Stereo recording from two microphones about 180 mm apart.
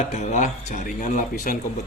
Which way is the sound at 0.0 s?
40° left (ahead or behind).